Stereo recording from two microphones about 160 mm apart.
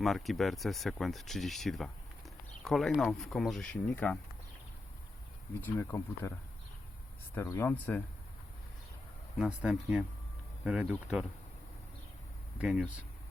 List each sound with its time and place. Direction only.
0.0 s speech: centre (ahead or behind)
5.5 s speech: 15° left (ahead or behind)
7.3 s speech: 20° left (ahead or behind)
9.4 s speech: 5° right (ahead or behind)
12.5 s speech: 5° right (ahead or behind)